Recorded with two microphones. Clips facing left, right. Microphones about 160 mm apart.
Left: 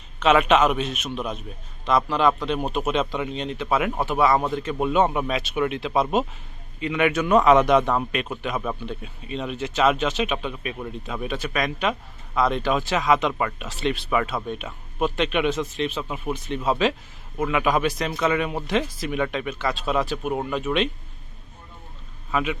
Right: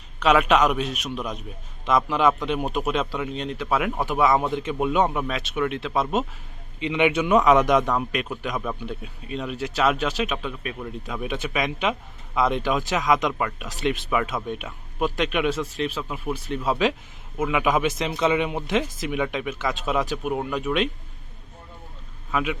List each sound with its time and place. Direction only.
0.3 s a man's voice: centre (ahead or behind)
2.0 s a man's voice: 10° right (ahead or behind); by 6.2 s 5° left (ahead or behind)
6.7 s a man's voice: 20° right (ahead or behind)
7.3 s a man's voice: centre (ahead or behind)
8.8 s a man's voice: 10° right (ahead or behind)
11.0 s speech: 10° right (ahead or behind)
12.9 s a man's voice: 5° right (ahead or behind)
18.0 s a man's voice: 20° right (ahead or behind); by 20.9 s centre (ahead or behind)
22.3 s a man's voice: centre (ahead or behind)